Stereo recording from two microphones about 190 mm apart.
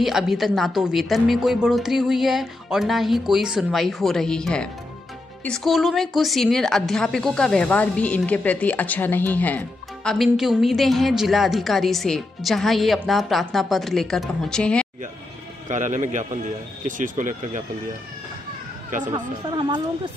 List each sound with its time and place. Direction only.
0.0 s a woman's voice: centre (ahead or behind)
15.7 s a man's voice: 40° right (ahead or behind)
19.1 s speech: 25° right (ahead or behind)